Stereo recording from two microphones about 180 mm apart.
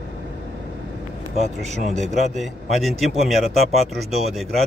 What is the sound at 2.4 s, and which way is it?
Speech, centre (ahead or behind).